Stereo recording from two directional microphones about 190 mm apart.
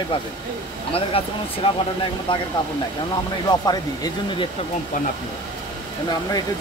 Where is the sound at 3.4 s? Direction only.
20° left (ahead or behind).